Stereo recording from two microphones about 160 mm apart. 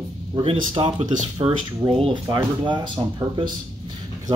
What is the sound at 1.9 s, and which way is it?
A man's voice, 35° right (ahead or behind).